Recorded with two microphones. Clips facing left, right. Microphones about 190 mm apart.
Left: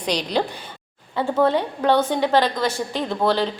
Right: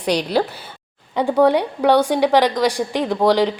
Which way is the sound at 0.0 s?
10° right (ahead or behind).